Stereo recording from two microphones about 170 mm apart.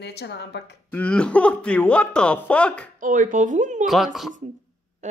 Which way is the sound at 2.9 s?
50° right (ahead or behind).